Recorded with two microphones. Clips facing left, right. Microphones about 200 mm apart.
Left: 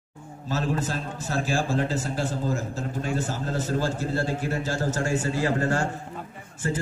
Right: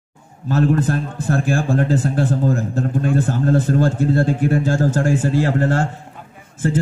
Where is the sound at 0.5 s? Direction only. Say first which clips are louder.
Right 10 dB; 55° right (ahead or behind); by 5.5 s 80° right.